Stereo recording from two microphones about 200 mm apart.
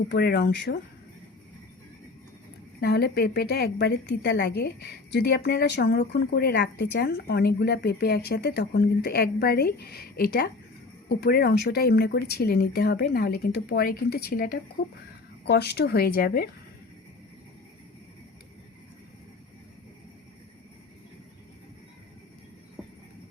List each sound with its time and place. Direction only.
0.1 s speech: 55° left (ahead or behind)
2.8 s a woman's voice: 50° left (ahead or behind)